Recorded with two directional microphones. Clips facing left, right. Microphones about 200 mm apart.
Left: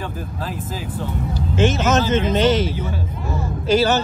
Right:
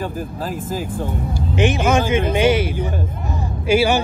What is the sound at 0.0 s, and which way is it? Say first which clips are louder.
Speech: right 3 dB; 45° right (ahead or behind).